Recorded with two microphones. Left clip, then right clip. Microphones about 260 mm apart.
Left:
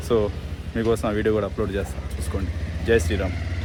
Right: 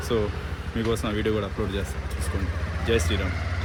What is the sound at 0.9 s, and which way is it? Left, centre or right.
Speech, centre.